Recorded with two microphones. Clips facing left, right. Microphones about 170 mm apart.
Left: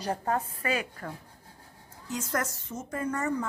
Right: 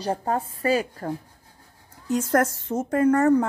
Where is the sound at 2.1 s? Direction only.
55° right (ahead or behind).